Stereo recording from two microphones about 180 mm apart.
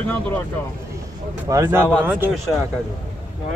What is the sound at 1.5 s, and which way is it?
Speech, 15° right (ahead or behind).